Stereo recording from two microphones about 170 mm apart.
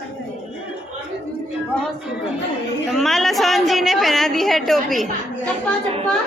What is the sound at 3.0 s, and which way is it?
A woman's voice, centre (ahead or behind).